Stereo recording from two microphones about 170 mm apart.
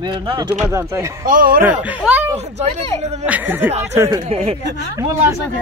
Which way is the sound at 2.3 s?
40° right (ahead or behind).